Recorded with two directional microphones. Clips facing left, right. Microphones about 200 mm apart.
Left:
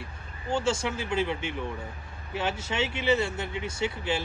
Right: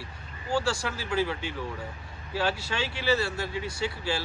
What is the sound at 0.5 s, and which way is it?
Speech, 20° left (ahead or behind).